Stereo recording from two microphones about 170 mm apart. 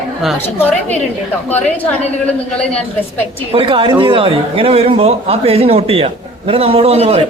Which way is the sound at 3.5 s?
30° right (ahead or behind).